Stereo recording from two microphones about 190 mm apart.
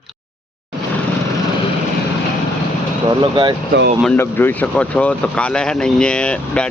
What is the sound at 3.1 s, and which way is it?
Speech, 25° right (ahead or behind).